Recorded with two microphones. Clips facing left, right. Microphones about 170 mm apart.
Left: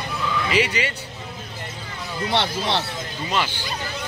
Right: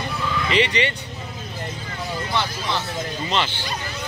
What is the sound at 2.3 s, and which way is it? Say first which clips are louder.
Speech: left 3 dB; 70° left (ahead or behind).